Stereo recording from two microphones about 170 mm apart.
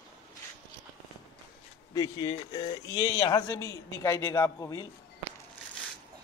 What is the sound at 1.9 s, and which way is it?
Speech, 20° left (ahead or behind).